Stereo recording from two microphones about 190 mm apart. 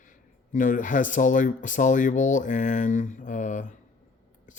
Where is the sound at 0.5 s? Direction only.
45° left (ahead or behind).